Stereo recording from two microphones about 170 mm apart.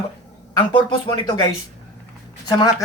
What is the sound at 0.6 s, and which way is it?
Speech, 30° left (ahead or behind).